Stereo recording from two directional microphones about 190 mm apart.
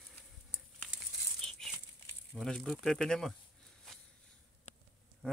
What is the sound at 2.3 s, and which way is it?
Speech, 5° left (ahead or behind).